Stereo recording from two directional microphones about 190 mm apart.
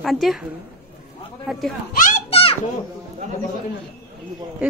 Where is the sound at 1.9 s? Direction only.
45° left (ahead or behind).